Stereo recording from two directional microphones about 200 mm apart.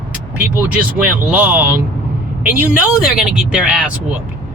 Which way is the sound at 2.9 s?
5° right (ahead or behind).